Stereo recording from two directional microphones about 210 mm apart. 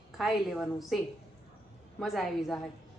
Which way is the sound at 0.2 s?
Centre (ahead or behind).